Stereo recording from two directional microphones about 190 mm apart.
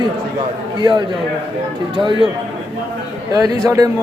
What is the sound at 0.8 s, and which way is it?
Speech, 25° right (ahead or behind).